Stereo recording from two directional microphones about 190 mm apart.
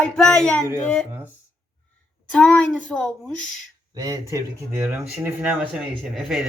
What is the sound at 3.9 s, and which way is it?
Speech, 20° right (ahead or behind).